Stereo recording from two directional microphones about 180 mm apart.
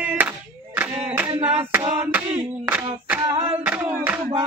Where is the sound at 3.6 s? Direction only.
10° right (ahead or behind).